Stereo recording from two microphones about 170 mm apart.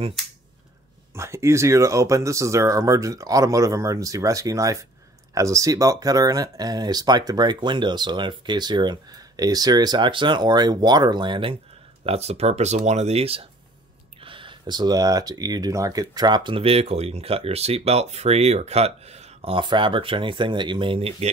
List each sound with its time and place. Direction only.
1.1 s speech: 15° right (ahead or behind); by 21.3 s 35° right (ahead or behind)